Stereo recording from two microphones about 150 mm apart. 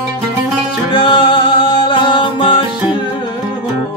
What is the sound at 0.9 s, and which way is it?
Music, 35° left (ahead or behind).